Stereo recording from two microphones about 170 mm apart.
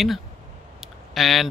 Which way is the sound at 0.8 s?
Centre (ahead or behind).